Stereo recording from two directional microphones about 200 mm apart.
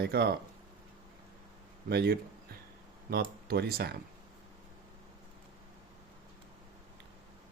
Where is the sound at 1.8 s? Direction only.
55° right (ahead or behind).